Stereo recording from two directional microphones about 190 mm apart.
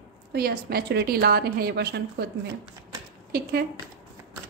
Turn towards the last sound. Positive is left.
turn(degrees=-55)  # may be behind; listen again after turning